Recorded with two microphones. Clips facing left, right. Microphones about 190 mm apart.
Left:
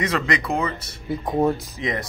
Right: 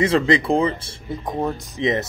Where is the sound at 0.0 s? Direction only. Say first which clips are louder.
Right 6 dB; 30° right (ahead or behind).